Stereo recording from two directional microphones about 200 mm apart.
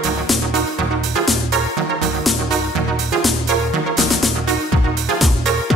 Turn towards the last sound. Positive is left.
turn(degrees=0)  # may be behind; listen again after turning